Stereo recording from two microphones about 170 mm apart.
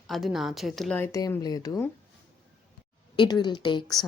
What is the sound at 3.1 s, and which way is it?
Speech, 25° left (ahead or behind).